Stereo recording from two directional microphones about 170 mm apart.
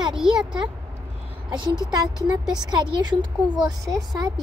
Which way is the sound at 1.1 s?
35° right (ahead or behind).